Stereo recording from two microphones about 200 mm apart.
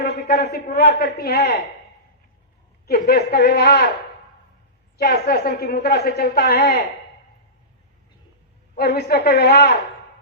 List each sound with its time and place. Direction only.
0.0 s a man's voice: 55° left (ahead or behind)
2.8 s a man's voice: 50° left (ahead or behind)
4.9 s a woman's voice: 50° left (ahead or behind)
8.7 s a woman's voice: 55° left (ahead or behind)